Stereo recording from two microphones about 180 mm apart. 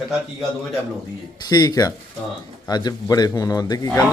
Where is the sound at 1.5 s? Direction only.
20° left (ahead or behind).